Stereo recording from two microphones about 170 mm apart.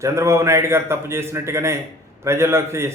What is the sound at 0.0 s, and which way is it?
Speech, 15° right (ahead or behind).